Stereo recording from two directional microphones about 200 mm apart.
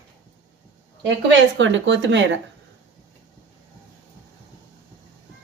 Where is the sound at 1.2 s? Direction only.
65° right (ahead or behind).